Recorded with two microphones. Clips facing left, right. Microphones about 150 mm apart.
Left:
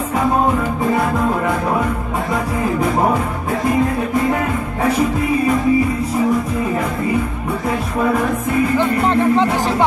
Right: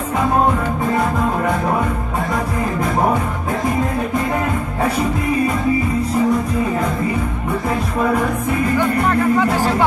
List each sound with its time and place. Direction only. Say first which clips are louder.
8.7 s music: even; 20° left (ahead or behind)